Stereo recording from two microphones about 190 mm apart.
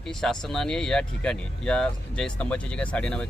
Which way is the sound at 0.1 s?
Centre (ahead or behind).